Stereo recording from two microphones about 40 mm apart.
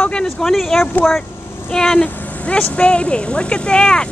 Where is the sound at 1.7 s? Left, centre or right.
Centre.